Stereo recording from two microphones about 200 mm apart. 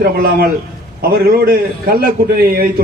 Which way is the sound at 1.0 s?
50° right (ahead or behind).